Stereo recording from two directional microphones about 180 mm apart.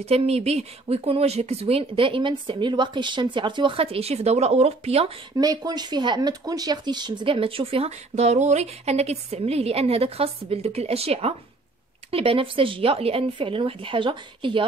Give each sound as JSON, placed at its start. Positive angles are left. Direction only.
{"t": 0.0, "sound": "speech", "side_deg": -35}
{"t": 5.4, "sound": "speech", "side_deg": -20}